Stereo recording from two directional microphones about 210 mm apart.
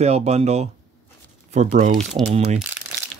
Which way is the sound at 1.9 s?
Centre (ahead or behind).